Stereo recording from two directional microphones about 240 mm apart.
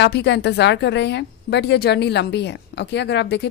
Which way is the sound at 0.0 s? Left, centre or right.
Left.